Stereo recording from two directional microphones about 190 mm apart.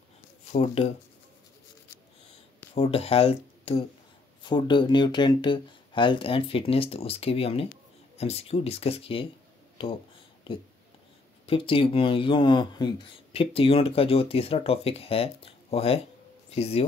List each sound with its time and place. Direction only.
0.5 s speech: 35° left (ahead or behind)
2.7 s speech: 30° left (ahead or behind)
11.4 s speech: 30° left (ahead or behind)